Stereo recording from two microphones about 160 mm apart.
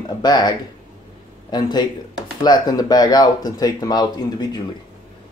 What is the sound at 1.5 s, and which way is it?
Speech, 25° left (ahead or behind).